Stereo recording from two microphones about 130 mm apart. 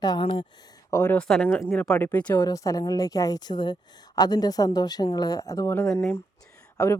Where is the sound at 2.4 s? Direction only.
25° left (ahead or behind).